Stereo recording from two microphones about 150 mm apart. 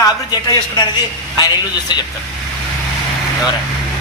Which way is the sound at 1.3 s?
25° left (ahead or behind).